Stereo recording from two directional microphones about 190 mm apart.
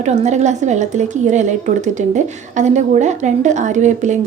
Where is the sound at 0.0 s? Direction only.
35° right (ahead or behind).